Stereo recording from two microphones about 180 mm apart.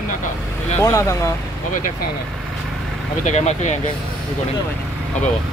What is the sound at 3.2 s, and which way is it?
Speech, 40° left (ahead or behind).